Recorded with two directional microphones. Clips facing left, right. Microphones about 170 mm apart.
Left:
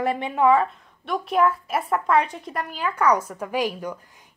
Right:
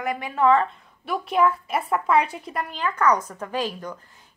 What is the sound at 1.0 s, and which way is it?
A woman's voice, centre (ahead or behind).